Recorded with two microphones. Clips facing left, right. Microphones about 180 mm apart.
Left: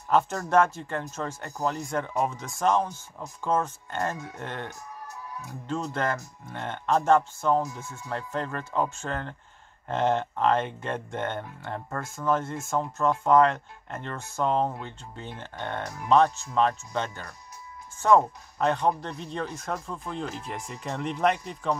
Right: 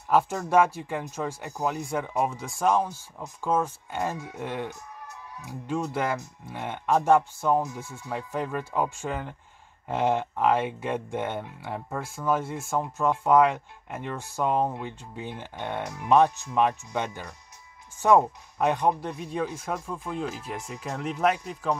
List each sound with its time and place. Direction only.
0.1 s speech: 10° right (ahead or behind)